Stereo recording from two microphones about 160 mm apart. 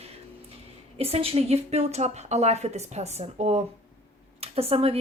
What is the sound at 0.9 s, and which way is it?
A woman's voice, 40° right (ahead or behind).